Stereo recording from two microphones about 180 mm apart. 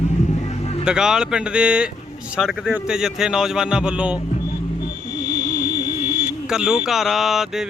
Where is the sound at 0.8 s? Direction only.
5° right (ahead or behind).